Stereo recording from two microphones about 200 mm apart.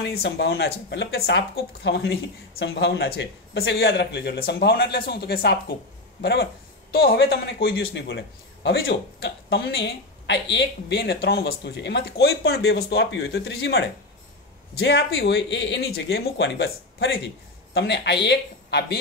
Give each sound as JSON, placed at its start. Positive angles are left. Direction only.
{"t": 0.0, "sound": "a man's voice", "side_deg": 55}